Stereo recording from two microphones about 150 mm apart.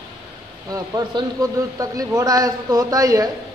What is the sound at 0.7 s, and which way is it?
Speech, 25° right (ahead or behind).